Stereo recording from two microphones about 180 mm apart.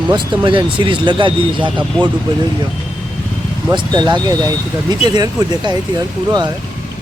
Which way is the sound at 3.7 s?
25° right (ahead or behind).